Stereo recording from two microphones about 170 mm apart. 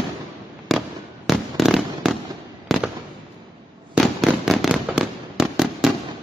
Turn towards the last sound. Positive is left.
turn(degrees=-5)  # may be behind; listen again after turning